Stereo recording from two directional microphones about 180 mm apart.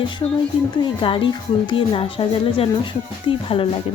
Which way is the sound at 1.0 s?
30° left (ahead or behind).